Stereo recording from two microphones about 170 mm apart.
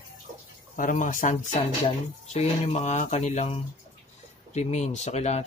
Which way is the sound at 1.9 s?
40° left (ahead or behind).